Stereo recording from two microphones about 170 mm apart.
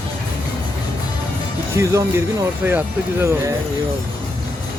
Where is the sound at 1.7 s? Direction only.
15° right (ahead or behind).